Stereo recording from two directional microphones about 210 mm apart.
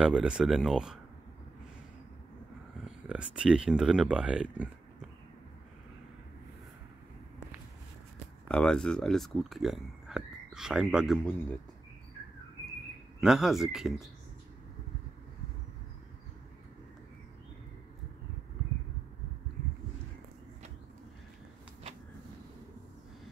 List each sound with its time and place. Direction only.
0.0 s speech: 5° right (ahead or behind)
2.8 s speech: 5° right (ahead or behind)
8.5 s speech: 5° left (ahead or behind)
13.2 s speech: centre (ahead or behind)